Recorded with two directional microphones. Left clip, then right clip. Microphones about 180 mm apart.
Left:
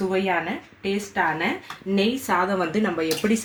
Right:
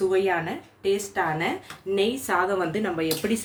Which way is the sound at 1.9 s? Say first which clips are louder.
Left 1 dB; 25° left (ahead or behind).